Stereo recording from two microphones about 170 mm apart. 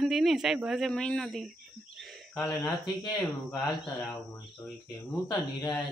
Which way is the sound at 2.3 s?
20° left (ahead or behind).